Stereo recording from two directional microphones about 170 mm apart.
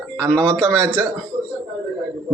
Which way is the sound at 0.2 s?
5° left (ahead or behind).